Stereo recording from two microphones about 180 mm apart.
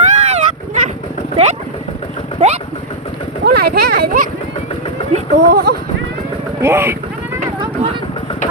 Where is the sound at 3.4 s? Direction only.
60° right (ahead or behind).